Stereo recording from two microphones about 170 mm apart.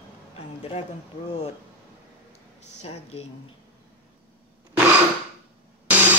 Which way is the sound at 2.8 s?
35° left (ahead or behind).